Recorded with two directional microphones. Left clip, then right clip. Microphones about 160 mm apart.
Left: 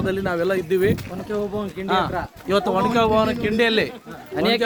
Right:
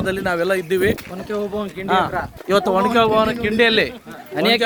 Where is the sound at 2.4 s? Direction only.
50° right (ahead or behind).